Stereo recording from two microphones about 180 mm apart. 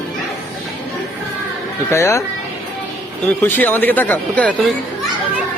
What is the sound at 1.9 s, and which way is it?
Speech, 15° left (ahead or behind).